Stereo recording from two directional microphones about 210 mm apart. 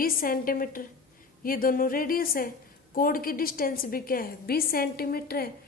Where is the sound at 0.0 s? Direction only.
45° left (ahead or behind).